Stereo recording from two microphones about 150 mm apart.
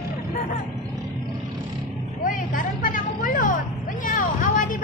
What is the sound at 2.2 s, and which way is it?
Vehicle, 65° left (ahead or behind).